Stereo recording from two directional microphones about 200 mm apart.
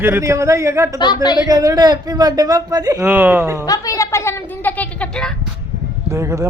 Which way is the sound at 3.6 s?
15° left (ahead or behind).